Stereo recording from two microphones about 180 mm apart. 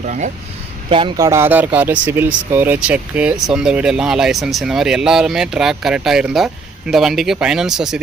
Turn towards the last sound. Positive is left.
turn(degrees=-5)  # may be behind; listen again after turning